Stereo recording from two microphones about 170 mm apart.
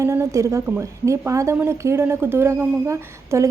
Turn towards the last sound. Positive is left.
turn(degrees=-15)  # may be behind; listen again after turning